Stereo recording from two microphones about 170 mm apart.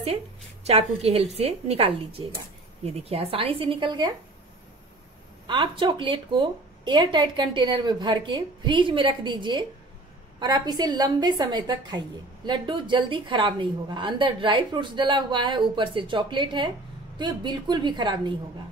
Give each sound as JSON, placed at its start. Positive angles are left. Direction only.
{"t": 0.7, "sound": "speech", "side_deg": -35}
{"t": 5.5, "sound": "a woman's voice", "side_deg": -30}